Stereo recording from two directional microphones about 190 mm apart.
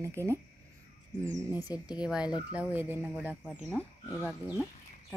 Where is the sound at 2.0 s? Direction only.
5° right (ahead or behind).